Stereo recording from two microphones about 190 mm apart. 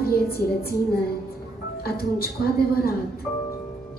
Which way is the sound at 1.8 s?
55° left (ahead or behind).